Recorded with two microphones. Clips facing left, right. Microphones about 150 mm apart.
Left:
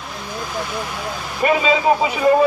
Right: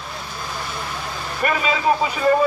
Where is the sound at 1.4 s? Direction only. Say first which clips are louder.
Left 5 dB; 20° left (ahead or behind).